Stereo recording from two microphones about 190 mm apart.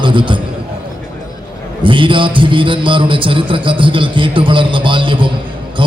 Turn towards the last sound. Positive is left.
turn(degrees=-25)  # may be behind; listen again after turning